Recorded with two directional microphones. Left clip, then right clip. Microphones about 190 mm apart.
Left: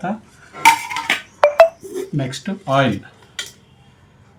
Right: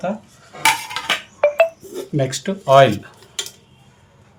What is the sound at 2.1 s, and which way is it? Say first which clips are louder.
Speech: right 4 dB; 60° right (ahead or behind).